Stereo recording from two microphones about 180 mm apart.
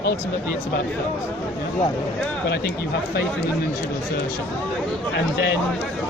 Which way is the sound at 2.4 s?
65° left (ahead or behind).